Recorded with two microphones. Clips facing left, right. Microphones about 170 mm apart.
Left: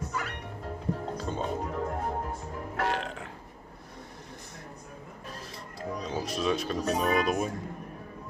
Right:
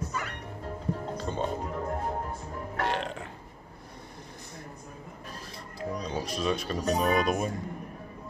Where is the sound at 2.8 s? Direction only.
Centre (ahead or behind).